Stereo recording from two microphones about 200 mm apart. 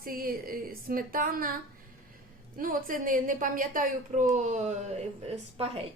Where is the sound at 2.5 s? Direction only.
45° right (ahead or behind).